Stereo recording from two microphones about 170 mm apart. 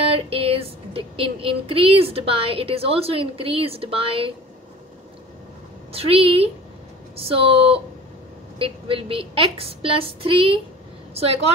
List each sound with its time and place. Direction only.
0.0 s child singing: 35° right (ahead or behind)
5.9 s child singing: 35° right (ahead or behind)